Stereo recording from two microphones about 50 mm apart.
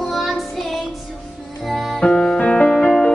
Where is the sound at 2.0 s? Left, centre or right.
Centre.